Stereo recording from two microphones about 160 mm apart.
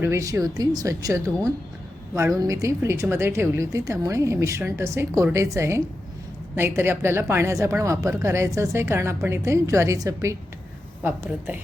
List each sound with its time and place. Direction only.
0.0 s a woman's voice: 20° right (ahead or behind)